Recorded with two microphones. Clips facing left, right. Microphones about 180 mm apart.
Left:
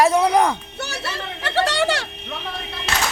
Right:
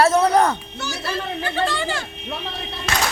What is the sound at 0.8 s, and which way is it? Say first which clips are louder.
Speech: right 2 dB; 70° left (ahead or behind).